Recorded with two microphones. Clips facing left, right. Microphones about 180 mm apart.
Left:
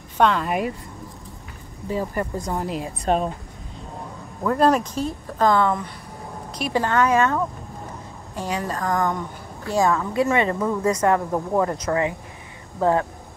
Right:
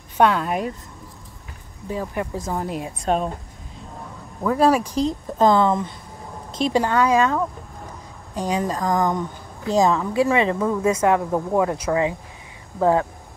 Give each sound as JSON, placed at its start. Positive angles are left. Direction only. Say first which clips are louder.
{"t": 0.2, "sound": "speech", "louder": "right 1 dB", "side_deg": -5}
{"t": 1.9, "sound": "speech", "louder": "left 1 dB", "side_deg": 0}
{"t": 4.4, "sound": "speech", "louder": "right 1 dB", "side_deg": -5}
{"t": 10.4, "sound": "speech", "louder": "right 1 dB", "side_deg": -5}